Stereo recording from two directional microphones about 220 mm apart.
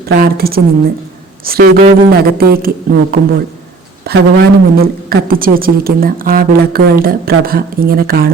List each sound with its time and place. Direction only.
0.0 s a woman's voice: 45° right (ahead or behind)